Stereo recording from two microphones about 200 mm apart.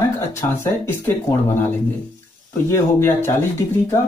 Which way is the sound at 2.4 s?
15° left (ahead or behind).